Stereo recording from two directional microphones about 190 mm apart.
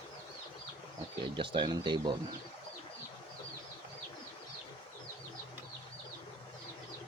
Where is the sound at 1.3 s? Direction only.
25° right (ahead or behind).